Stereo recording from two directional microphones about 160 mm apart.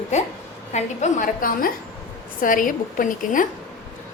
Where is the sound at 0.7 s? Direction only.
50° left (ahead or behind).